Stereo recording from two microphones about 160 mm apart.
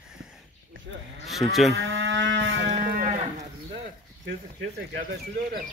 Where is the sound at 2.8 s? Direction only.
60° right (ahead or behind).